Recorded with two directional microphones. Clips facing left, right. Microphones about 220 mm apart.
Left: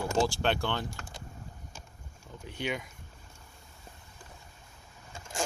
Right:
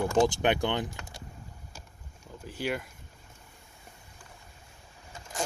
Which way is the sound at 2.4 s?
5° right (ahead or behind).